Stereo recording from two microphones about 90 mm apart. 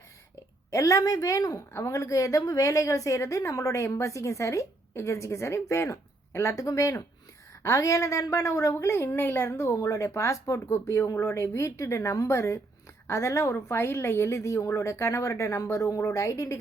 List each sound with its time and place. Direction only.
0.7 s a woman's voice: 35° left (ahead or behind)